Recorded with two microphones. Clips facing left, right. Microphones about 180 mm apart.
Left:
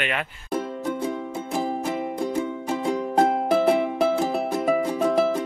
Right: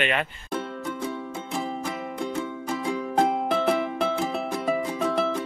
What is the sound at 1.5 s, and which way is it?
Music, 35° left (ahead or behind).